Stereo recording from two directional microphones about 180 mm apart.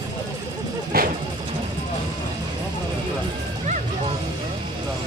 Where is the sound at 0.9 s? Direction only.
55° right (ahead or behind).